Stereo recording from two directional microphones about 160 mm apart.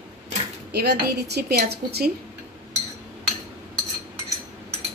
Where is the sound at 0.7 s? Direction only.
90° right.